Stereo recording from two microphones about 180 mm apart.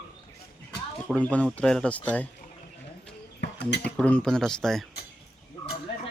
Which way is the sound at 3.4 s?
70° left (ahead or behind).